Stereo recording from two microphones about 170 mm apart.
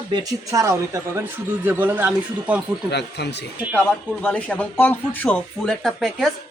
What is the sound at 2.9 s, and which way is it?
Speech, 80° left.